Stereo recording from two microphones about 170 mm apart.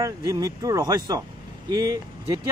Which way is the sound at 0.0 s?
20° right (ahead or behind).